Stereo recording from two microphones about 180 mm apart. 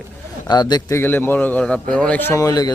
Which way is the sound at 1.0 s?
10° left (ahead or behind).